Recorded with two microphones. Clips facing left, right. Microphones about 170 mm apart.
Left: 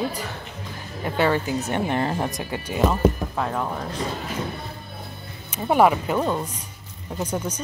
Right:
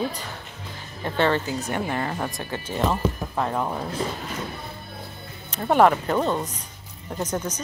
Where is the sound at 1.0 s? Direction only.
10° left (ahead or behind).